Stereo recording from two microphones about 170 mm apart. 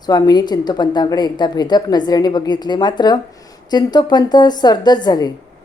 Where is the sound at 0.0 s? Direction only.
25° left (ahead or behind).